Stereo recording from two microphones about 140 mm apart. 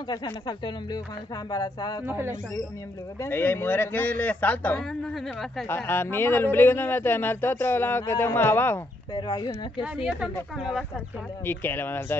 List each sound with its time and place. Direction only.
0.1 s speech: 30° left (ahead or behind)
2.0 s speech: 15° right (ahead or behind)
3.2 s speech: 15° left (ahead or behind)
5.1 s speech: centre (ahead or behind)
5.7 s speech: 15° left (ahead or behind)
9.1 s speech: 30° left (ahead or behind)
9.9 s speech: 5° right (ahead or behind)
11.4 s speech: 15° left (ahead or behind)